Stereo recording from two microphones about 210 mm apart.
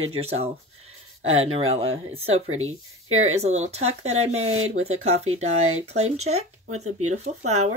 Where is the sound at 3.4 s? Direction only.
30° right (ahead or behind).